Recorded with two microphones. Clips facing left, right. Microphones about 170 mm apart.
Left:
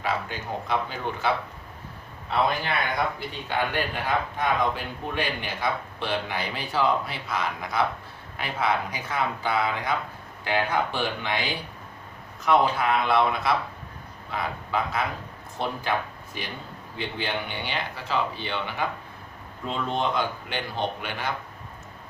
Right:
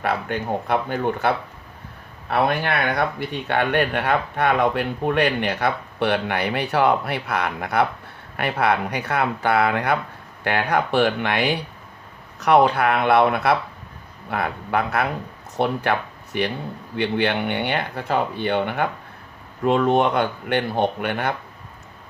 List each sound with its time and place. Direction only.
0.0 s speech: 60° right (ahead or behind)
2.3 s speech: 65° right (ahead or behind)